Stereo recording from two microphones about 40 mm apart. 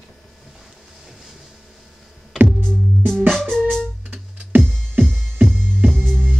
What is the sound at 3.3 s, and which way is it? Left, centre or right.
Music, centre.